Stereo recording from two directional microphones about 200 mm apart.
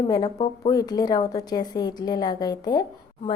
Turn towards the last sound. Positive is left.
turn(degrees=20)  # may be behind; listen again after turning